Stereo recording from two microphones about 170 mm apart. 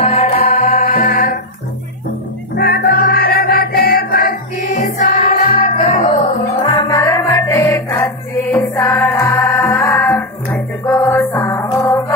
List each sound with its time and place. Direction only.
0.0 s music: 40° left (ahead or behind); by 1.4 s 55° left (ahead or behind)
2.5 s music: 65° left (ahead or behind); by 6.1 s 45° left (ahead or behind)
6.7 s music: 25° left (ahead or behind)